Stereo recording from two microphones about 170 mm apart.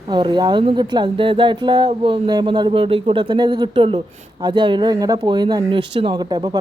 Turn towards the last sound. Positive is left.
turn(degrees=-25)  # may be behind; listen again after turning